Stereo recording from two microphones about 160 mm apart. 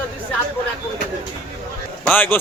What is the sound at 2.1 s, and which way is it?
Speech, 10° left (ahead or behind).